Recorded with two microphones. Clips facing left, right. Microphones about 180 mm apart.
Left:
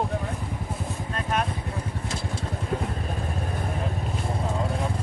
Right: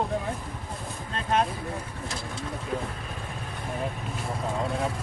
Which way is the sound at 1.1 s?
30° right (ahead or behind).